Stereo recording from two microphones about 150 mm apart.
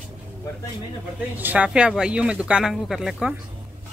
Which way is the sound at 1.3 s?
10° right (ahead or behind).